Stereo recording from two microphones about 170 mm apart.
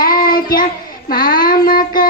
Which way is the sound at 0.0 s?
60° left (ahead or behind).